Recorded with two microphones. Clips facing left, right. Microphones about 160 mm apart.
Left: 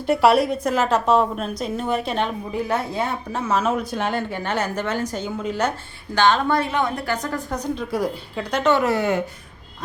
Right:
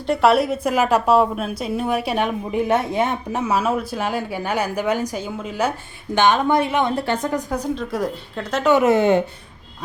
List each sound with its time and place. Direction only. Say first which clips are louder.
0.0 s a woman's voice: even; 5° left (ahead or behind)
6.1 s a woman's voice: right 2 dB; 20° right (ahead or behind)
7.5 s a woman's voice: right 1 dB; 5° right (ahead or behind)
8.7 s a woman's voice: right 7 dB; 20° right (ahead or behind)